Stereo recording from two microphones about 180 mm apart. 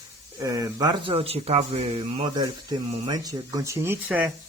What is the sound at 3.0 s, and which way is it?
Speech, 20° right (ahead or behind).